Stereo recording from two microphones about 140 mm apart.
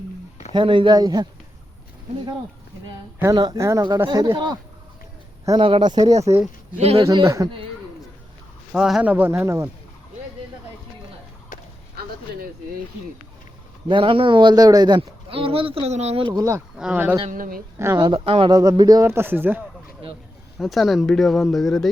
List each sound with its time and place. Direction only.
0.5 s speech: 35° right (ahead or behind)
3.3 s speech: 30° right (ahead or behind)
6.7 s speech: 45° right (ahead or behind)
7.1 s speech: 25° right (ahead or behind)
8.7 s speech: 5° right (ahead or behind)
13.8 s speech: 35° right (ahead or behind)
16.2 s speech: 25° right (ahead or behind)
16.7 s speech: 5° right (ahead or behind)
17.3 s speech: 80° right
17.9 s speech: 35° right (ahead or behind)
18.5 s speech: 25° right (ahead or behind)
20.6 s speech: centre (ahead or behind)